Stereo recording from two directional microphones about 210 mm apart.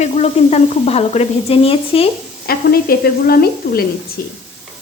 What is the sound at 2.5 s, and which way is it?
Speech, 45° left (ahead or behind).